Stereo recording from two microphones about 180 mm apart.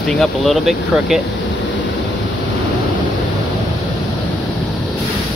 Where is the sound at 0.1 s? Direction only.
Centre (ahead or behind).